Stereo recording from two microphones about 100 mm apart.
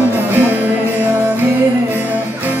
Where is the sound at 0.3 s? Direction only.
15° right (ahead or behind).